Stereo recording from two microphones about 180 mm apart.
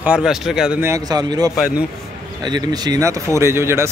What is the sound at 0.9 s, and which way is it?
A man's voice, 20° right (ahead or behind).